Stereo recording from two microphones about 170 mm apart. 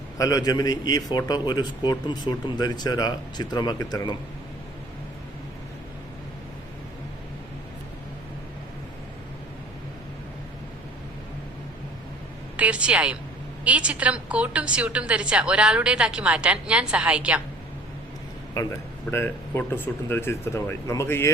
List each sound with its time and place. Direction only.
0.2 s a man's voice: 20° left (ahead or behind)
12.5 s a woman's voice: 5° right (ahead or behind)
19.1 s speech: 15° left (ahead or behind)